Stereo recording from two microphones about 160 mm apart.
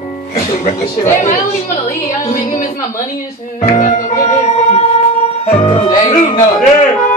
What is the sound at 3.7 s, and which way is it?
Organ, 50° left (ahead or behind).